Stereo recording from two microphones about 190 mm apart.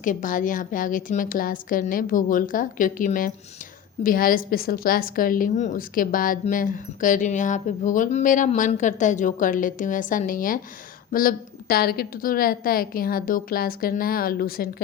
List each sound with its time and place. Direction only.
0.0 s a woman's voice: 45° left (ahead or behind)